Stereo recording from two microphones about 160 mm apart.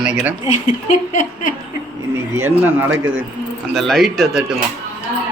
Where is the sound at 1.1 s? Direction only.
50° left (ahead or behind).